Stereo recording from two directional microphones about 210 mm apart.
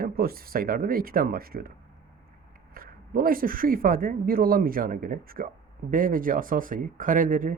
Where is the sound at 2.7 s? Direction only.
45° right (ahead or behind).